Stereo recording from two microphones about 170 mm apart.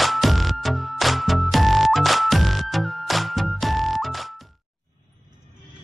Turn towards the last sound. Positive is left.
turn(degrees=0)  # may be behind; listen again after turning